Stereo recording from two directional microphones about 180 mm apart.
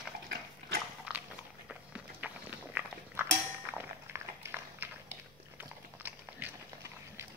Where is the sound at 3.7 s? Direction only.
10° right (ahead or behind).